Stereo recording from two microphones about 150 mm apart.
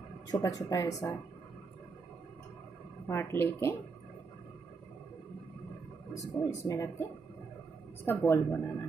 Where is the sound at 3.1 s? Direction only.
15° left (ahead or behind).